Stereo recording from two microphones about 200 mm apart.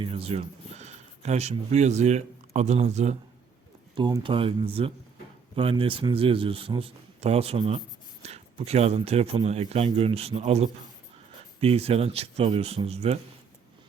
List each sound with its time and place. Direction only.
0.0 s speech: 30° right (ahead or behind)
3.9 s a man's voice: 25° right (ahead or behind)